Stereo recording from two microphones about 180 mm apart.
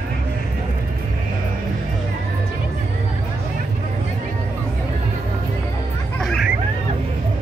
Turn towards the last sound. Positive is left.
turn(degrees=0)  # may be behind; listen again after turning